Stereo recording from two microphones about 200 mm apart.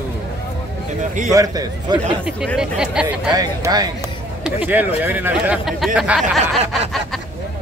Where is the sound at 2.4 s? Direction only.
5° right (ahead or behind).